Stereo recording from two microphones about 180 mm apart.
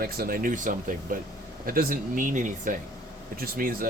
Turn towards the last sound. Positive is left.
turn(degrees=-55)  # may be behind; listen again after turning